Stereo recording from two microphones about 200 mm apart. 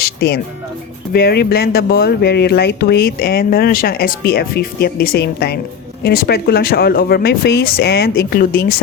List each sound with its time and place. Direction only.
0.0 s music: 50° left (ahead or behind)
1.1 s speech: 50° left (ahead or behind)